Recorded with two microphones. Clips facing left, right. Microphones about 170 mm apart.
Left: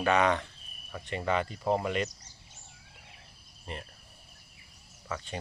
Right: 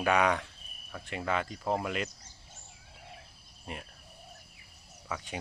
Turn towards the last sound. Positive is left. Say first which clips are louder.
# left 1 dB
turn(degrees=-10)  # may be behind; listen again after turning